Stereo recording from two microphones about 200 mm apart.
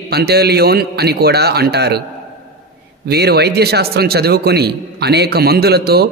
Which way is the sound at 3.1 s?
55° right (ahead or behind).